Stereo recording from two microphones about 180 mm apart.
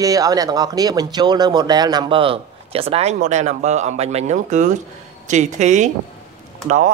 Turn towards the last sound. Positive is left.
turn(degrees=-40)  # may be behind; listen again after turning